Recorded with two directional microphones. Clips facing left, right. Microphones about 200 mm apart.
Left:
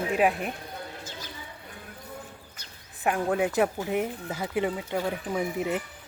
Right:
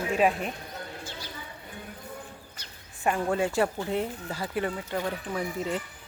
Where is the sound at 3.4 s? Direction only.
15° left (ahead or behind).